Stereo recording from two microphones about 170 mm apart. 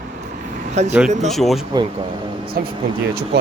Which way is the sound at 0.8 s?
40° right (ahead or behind).